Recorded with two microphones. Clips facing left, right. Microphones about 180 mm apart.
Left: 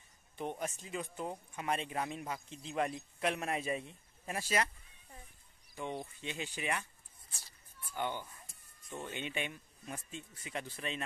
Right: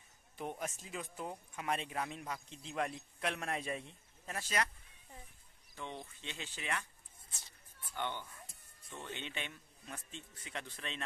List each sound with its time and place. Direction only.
0.4 s speech: centre (ahead or behind)
5.8 s speech: 10° left (ahead or behind)
7.2 s shuffle: 20° right (ahead or behind)
7.9 s speech: 10° left (ahead or behind)